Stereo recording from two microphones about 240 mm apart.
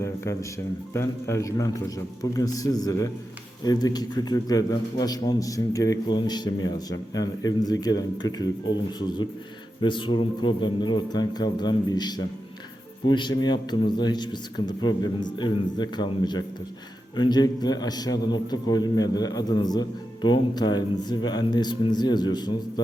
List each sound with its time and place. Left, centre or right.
0.9 s a man's voice: centre